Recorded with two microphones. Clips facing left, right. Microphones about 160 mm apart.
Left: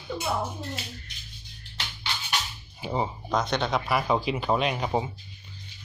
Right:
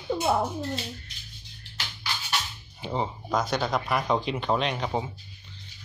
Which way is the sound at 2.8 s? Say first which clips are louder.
Left 1 dB; 10° left (ahead or behind).